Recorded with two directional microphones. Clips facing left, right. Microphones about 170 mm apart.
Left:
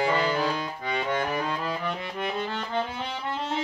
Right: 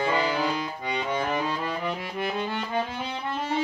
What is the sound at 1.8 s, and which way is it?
Music, 5° right (ahead or behind).